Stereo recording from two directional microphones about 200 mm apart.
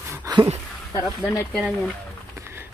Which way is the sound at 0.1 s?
15° right (ahead or behind).